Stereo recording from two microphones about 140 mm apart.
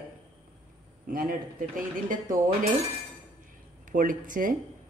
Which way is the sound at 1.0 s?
90° right.